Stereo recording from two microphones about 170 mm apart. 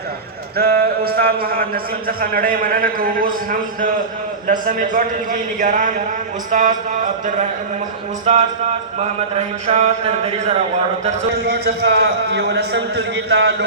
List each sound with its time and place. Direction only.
0.5 s a man's voice: 60° right (ahead or behind)
9.0 s a man's voice: 40° right (ahead or behind)
11.4 s a man's voice: 75° right (ahead or behind)